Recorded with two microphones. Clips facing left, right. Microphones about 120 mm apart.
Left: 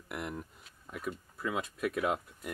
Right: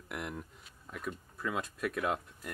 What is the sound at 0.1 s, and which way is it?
Speech, centre (ahead or behind).